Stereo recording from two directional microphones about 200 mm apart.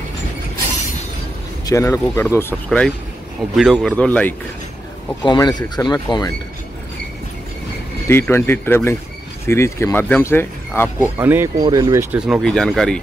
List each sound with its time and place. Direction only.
1.7 s speech: 15° left (ahead or behind)
5.2 s speech: 20° left (ahead or behind)
8.1 s speech: 10° left (ahead or behind)
11.0 s speech: 10° right (ahead or behind)